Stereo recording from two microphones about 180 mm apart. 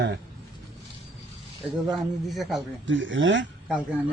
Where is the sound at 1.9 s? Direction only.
Centre (ahead or behind).